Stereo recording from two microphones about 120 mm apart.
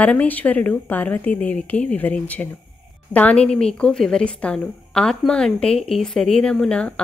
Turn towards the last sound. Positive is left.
turn(degrees=5)  # may be behind; listen again after turning